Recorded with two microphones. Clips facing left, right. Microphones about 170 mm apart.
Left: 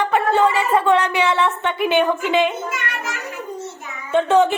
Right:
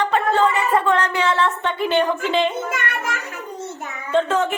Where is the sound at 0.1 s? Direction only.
10° left (ahead or behind).